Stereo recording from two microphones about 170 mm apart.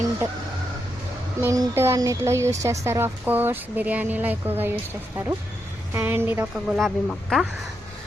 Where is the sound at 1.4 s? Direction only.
15° right (ahead or behind).